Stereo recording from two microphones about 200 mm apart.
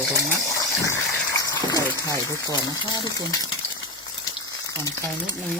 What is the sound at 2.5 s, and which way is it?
Speech, 20° left (ahead or behind).